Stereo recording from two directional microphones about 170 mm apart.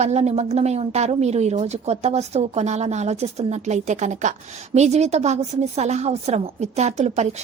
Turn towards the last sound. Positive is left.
turn(degrees=-40)  # may be behind; listen again after turning